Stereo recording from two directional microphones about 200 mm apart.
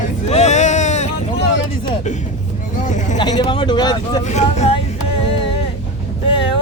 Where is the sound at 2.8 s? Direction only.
35° left (ahead or behind).